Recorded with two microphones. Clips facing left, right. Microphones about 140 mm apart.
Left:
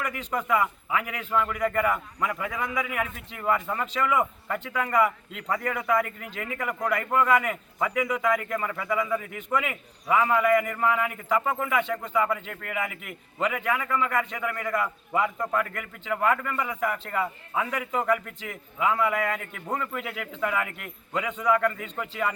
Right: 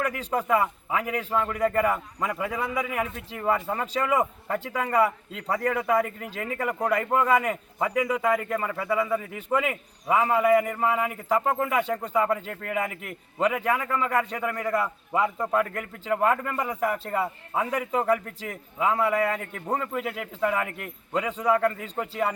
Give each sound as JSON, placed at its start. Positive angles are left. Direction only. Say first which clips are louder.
{"t": 0.0, "sound": "a man's voice", "louder": "right 3 dB", "side_deg": -35}